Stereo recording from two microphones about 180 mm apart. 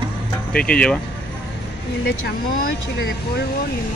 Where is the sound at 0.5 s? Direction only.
5° left (ahead or behind).